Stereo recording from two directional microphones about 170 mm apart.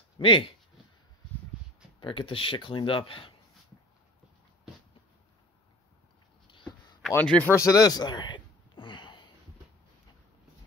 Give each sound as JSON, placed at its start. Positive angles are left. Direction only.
{"t": 0.2, "sound": "speech", "side_deg": 30}
{"t": 2.0, "sound": "speech", "side_deg": 30}
{"t": 7.2, "sound": "a sound", "side_deg": 10}